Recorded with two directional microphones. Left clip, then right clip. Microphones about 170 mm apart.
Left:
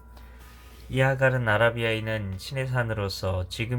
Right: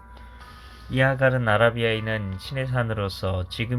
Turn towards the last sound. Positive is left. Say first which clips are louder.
# right 2 dB
turn(degrees=-5)  # may be behind; listen again after turning